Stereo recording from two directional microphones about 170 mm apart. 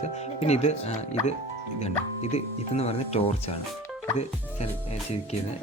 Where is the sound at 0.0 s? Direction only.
40° left (ahead or behind).